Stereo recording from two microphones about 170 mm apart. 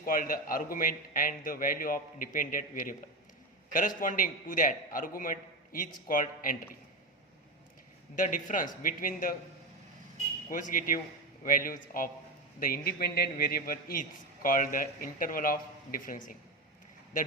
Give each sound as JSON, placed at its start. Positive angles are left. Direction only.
{"t": 0.0, "sound": "a man's voice", "side_deg": 55}
{"t": 8.1, "sound": "a man's voice", "side_deg": 50}
{"t": 10.5, "sound": "a man's voice", "side_deg": 50}